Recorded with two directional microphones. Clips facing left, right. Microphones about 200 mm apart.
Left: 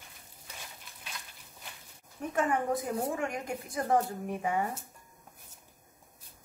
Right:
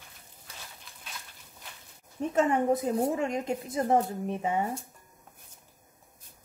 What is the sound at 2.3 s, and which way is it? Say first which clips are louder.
Speech: right 5 dB; 25° right (ahead or behind).